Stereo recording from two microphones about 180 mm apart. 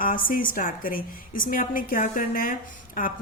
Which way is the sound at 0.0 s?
50° left (ahead or behind).